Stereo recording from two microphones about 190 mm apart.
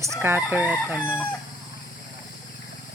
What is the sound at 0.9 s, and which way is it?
Chicken, 10° left (ahead or behind).